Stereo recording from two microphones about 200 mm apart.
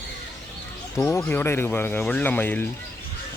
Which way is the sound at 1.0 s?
10° left (ahead or behind).